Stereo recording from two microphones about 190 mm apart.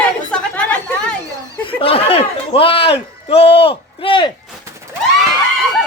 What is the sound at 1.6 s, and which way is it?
Speech, 30° left (ahead or behind).